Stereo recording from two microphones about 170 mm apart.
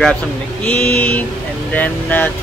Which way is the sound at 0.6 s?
5° left (ahead or behind).